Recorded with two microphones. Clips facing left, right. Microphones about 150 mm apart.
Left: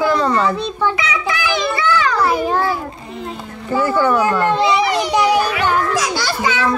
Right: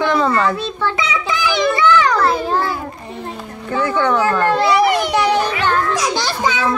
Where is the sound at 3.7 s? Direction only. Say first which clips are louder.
Left 1 dB; 5° left (ahead or behind).